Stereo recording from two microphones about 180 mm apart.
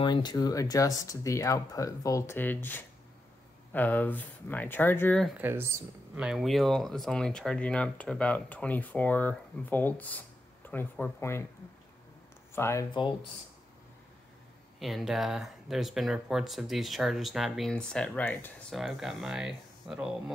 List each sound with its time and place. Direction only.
0.0 s speech: 25° left (ahead or behind); by 5.3 s 10° left (ahead or behind)
5.4 s speech: 15° right (ahead or behind); by 11.4 s 15° left (ahead or behind)
12.5 s speech: 15° left (ahead or behind)
14.8 s speech: centre (ahead or behind)